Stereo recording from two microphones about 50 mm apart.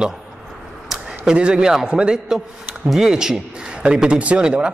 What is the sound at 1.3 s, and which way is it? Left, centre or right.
A man's voice, centre.